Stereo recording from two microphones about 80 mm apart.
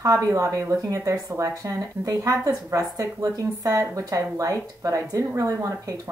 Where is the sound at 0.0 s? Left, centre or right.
Right.